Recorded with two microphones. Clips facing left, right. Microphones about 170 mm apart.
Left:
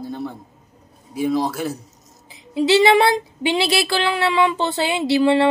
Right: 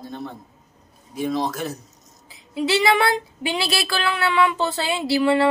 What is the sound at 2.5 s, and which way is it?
Speech, 25° left (ahead or behind).